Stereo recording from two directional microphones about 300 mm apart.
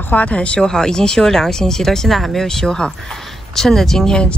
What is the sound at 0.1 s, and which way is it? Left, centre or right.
A woman's voice, centre.